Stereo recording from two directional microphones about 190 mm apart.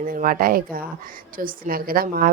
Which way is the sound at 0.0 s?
45° right (ahead or behind).